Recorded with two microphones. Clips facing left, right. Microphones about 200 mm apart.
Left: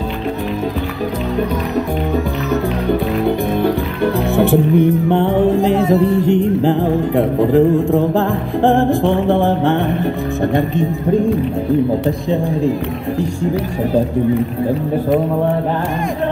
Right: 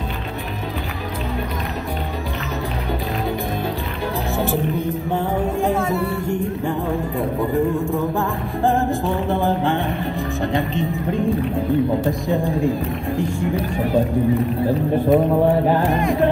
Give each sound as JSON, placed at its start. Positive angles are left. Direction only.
{"t": 3.3, "sound": "music", "side_deg": 65}
{"t": 6.6, "sound": "a sound", "side_deg": 80}
{"t": 8.2, "sound": "music", "side_deg": 90}
{"t": 10.4, "sound": "speech", "side_deg": 55}